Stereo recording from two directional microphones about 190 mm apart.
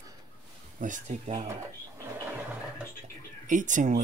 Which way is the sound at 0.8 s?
40° right (ahead or behind).